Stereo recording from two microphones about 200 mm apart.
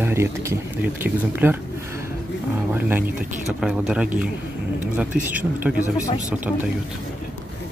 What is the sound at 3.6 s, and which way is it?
Speech, 5° right (ahead or behind).